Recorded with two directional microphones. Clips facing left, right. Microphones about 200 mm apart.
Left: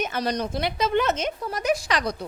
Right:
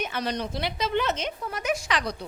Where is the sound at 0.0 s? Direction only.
40° left (ahead or behind).